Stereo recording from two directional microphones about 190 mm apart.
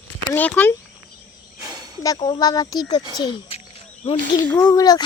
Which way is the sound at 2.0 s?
25° left (ahead or behind).